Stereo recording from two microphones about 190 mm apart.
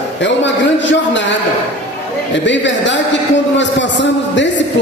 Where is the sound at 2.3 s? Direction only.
70° left (ahead or behind).